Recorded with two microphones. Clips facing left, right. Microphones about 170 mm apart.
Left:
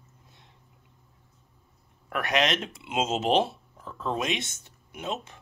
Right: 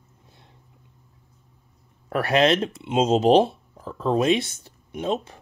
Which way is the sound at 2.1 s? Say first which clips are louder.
Right 7 dB; 35° right (ahead or behind).